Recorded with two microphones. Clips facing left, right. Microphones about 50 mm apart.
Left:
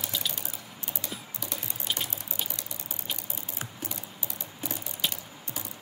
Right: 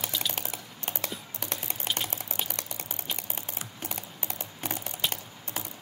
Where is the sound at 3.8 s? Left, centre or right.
Right.